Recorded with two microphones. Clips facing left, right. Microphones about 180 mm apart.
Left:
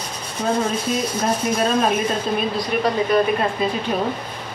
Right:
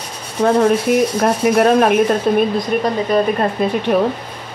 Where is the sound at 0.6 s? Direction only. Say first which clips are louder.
Right 9 dB; 65° right (ahead or behind).